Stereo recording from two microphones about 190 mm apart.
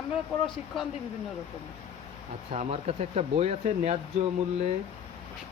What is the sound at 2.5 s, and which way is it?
Speech, 35° right (ahead or behind).